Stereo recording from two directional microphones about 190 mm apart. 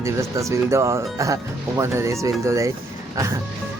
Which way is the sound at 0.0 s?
15° right (ahead or behind).